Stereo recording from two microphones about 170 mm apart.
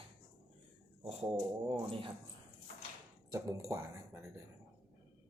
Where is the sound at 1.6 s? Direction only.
30° right (ahead or behind).